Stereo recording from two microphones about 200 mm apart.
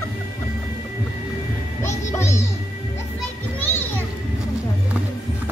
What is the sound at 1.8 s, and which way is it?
Music, 15° left (ahead or behind).